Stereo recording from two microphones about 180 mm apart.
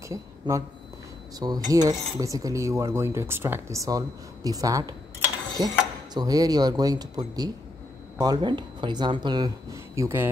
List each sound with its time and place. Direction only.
0.1 s speech: 15° right (ahead or behind)
1.4 s cutlery: 20° right (ahead or behind)
5.6 s speech: 20° right (ahead or behind)